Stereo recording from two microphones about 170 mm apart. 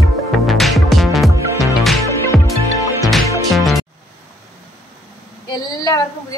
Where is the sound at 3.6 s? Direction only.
Centre (ahead or behind).